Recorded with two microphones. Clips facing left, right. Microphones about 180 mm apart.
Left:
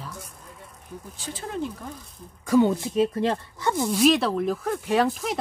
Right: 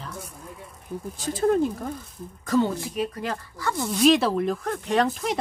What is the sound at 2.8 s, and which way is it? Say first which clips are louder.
A woman's voice: left 6 dB; 25° left (ahead or behind).